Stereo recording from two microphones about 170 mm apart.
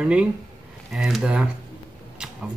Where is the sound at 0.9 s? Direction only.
5° right (ahead or behind).